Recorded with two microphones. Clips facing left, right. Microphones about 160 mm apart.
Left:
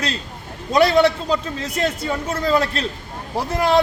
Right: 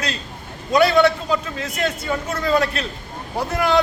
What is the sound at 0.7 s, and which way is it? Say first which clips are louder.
Speech: even; 30° left (ahead or behind).